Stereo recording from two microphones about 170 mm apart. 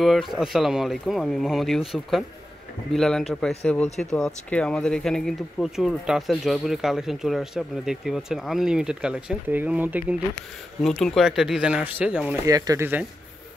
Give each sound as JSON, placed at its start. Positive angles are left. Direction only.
{"t": 0.0, "sound": "speech", "side_deg": 0}
{"t": 10.8, "sound": "speech", "side_deg": 0}
{"t": 12.4, "sound": "speech", "side_deg": -20}